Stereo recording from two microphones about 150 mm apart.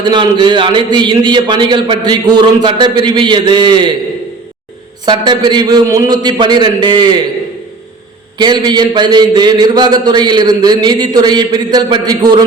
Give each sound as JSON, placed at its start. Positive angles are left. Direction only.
{"t": 0.0, "sound": "a man's voice", "side_deg": -30}
{"t": 5.0, "sound": "a man's voice", "side_deg": -30}
{"t": 8.4, "sound": "a man's voice", "side_deg": -30}